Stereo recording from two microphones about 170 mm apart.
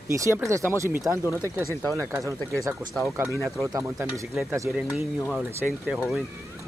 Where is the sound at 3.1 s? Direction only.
15° right (ahead or behind).